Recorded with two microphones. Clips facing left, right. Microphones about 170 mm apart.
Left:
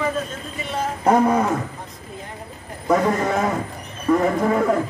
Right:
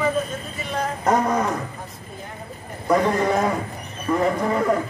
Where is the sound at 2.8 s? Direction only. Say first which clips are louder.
Even; centre (ahead or behind).